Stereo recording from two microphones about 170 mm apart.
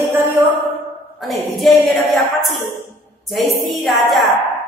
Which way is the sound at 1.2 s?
Centre (ahead or behind).